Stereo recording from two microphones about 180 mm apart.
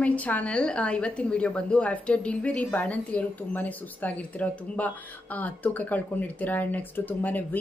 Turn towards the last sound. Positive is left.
turn(degrees=10)  # may be behind; listen again after turning